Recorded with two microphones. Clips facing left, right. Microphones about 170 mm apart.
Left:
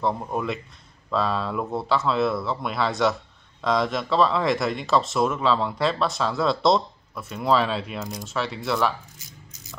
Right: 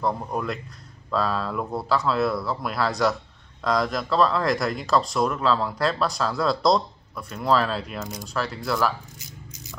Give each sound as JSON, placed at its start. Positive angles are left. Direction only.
{"t": 0.0, "sound": "speech", "side_deg": 0}